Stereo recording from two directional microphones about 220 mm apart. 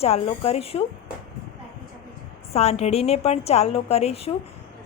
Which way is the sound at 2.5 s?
30° left (ahead or behind).